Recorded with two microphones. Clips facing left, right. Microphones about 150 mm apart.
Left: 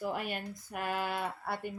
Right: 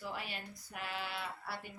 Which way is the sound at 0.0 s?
50° left (ahead or behind).